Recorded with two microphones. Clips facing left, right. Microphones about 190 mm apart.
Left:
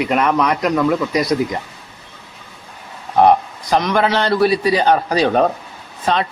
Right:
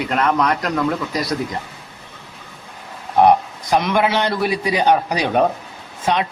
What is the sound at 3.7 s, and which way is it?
A man's voice, 10° right (ahead or behind).